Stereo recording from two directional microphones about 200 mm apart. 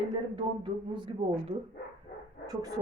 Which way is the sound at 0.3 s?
25° right (ahead or behind).